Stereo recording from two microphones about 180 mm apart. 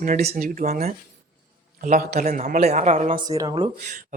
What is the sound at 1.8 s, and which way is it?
Speech, 55° right (ahead or behind).